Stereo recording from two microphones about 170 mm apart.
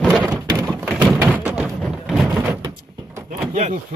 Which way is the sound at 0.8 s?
Centre (ahead or behind).